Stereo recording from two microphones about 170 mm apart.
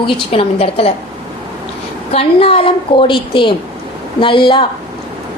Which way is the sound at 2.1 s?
35° left (ahead or behind).